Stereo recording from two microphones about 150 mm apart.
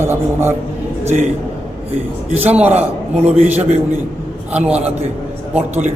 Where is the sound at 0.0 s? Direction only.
15° right (ahead or behind).